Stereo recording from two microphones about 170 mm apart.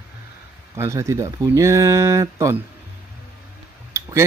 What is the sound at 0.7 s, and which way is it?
Speech, 15° right (ahead or behind).